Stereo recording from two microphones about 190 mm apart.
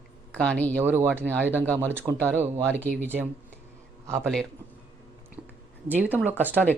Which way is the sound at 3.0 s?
10° right (ahead or behind).